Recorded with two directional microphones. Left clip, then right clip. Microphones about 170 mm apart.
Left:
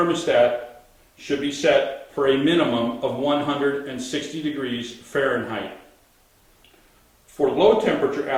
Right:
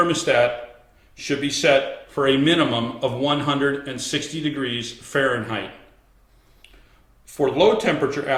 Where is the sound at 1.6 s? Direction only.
40° right (ahead or behind).